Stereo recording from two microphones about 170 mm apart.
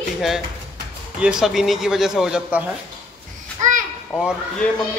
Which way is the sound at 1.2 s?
5° right (ahead or behind).